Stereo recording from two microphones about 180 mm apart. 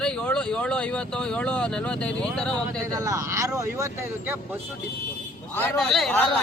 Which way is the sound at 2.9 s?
20° right (ahead or behind).